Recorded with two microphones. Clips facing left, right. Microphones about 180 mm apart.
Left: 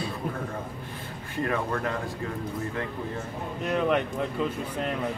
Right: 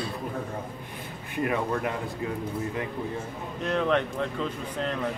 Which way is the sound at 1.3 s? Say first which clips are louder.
Right 1 dB; 15° right (ahead or behind).